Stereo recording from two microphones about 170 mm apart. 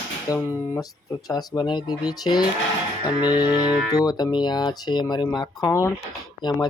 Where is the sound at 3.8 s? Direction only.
20° left (ahead or behind).